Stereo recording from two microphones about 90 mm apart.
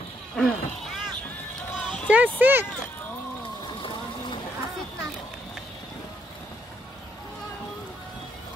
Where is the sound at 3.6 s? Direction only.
65° left (ahead or behind).